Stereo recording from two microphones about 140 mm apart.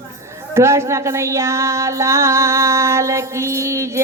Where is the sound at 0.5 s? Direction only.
20° right (ahead or behind).